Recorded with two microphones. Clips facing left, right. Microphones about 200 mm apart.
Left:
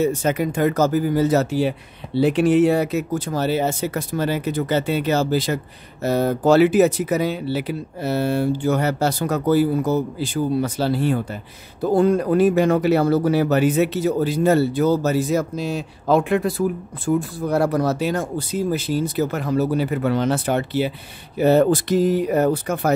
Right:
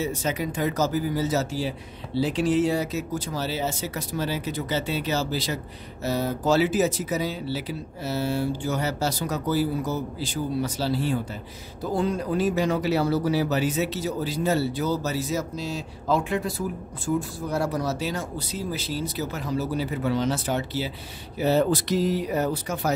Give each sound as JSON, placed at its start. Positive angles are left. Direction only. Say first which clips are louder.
{"t": 0.0, "sound": "speech", "louder": "left 7 dB", "side_deg": 55}